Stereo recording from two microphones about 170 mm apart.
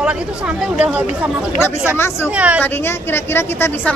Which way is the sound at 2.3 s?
10° right (ahead or behind).